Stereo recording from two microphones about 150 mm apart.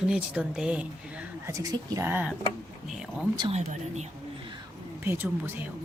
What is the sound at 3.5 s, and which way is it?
Speech, 50° right (ahead or behind).